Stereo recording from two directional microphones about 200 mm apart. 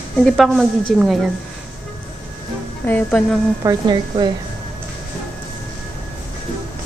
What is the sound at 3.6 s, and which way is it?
Speech, 20° right (ahead or behind).